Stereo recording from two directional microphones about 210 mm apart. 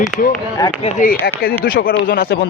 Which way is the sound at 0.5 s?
20° left (ahead or behind).